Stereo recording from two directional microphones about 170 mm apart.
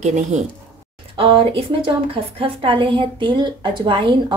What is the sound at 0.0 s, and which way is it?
Speech, 45° right (ahead or behind).